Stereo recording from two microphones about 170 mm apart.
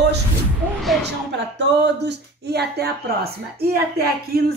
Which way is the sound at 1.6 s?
85° right.